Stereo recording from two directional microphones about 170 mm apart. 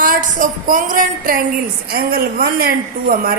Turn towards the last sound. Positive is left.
turn(degrees=-60)  # may be behind; listen again after turning